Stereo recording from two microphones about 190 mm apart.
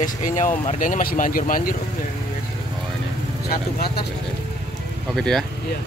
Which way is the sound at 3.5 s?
55° left (ahead or behind).